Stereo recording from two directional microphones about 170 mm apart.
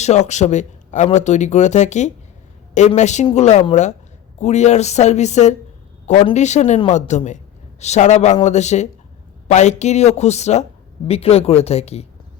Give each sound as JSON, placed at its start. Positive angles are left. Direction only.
{"t": 0.0, "sound": "speech", "side_deg": 40}